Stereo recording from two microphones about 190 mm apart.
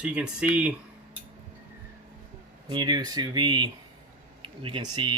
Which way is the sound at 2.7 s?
25° right (ahead or behind).